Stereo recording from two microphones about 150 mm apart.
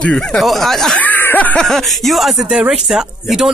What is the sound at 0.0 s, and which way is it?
Speech, 5° left (ahead or behind).